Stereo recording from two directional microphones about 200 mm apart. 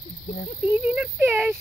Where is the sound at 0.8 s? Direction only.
5° right (ahead or behind).